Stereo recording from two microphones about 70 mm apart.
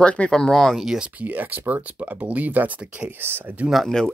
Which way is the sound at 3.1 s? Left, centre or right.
Right.